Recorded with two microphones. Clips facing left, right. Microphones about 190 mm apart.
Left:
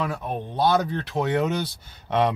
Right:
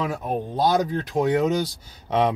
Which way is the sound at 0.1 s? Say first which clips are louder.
Right 3 dB; 40° right (ahead or behind).